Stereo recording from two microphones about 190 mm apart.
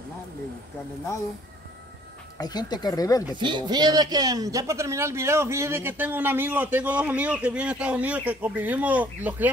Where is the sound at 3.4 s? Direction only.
25° right (ahead or behind).